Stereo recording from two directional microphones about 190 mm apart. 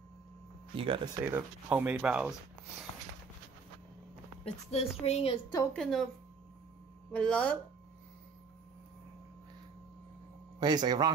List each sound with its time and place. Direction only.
0.7 s speech: 25° right (ahead or behind); by 2.3 s 5° right (ahead or behind)
4.6 s a woman's voice: 35° left (ahead or behind)
5.7 s speech: 5° left (ahead or behind)
7.1 s speech: 5° left (ahead or behind)
10.6 s a man's voice: 20° right (ahead or behind)